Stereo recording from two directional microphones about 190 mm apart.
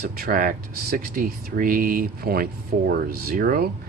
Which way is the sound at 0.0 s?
50° right (ahead or behind).